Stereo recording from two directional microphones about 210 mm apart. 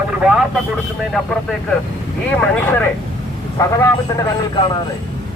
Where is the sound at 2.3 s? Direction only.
5° left (ahead or behind).